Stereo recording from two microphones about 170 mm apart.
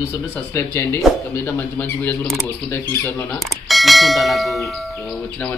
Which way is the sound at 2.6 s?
10° left (ahead or behind).